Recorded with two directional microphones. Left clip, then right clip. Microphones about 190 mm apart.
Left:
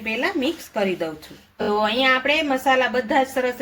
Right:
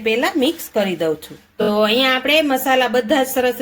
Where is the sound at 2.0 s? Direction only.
50° right (ahead or behind).